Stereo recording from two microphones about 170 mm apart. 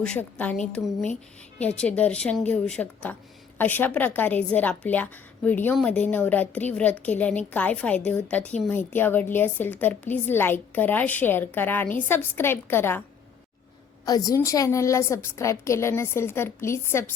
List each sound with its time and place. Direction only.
0.0 s a woman's voice: 5° left (ahead or behind)
14.0 s a woman's voice: 20° left (ahead or behind)